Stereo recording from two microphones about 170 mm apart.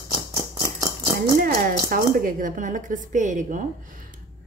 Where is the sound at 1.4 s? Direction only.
60° right (ahead or behind).